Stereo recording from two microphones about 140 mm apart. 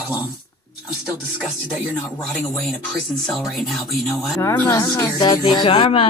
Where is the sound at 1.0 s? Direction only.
10° right (ahead or behind).